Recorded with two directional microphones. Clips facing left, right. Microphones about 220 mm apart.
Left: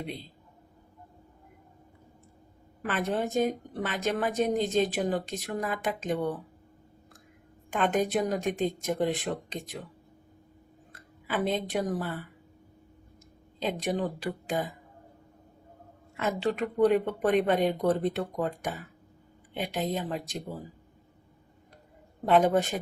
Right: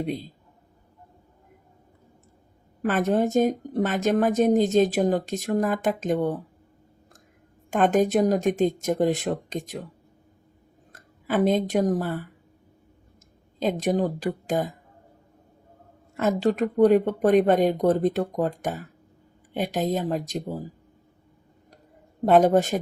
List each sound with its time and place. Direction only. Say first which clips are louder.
0.0 s a woman's voice: right 9 dB; 45° right (ahead or behind)
2.8 s a woman's voice: right 7 dB; 45° right (ahead or behind)
7.7 s a woman's voice: right 6 dB; 45° right (ahead or behind)
10.9 s speech: right 7 dB; 45° right (ahead or behind)
13.6 s a woman's voice: right 6 dB; 45° right (ahead or behind)
16.1 s a woman's voice: right 6 dB; 40° right (ahead or behind)
22.3 s a woman's voice: right 5 dB; 45° right (ahead or behind)